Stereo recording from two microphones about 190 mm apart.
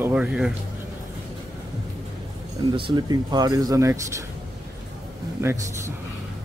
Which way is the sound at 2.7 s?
25° right (ahead or behind).